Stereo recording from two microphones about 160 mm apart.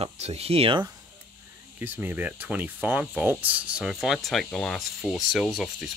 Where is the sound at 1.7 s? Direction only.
10° right (ahead or behind).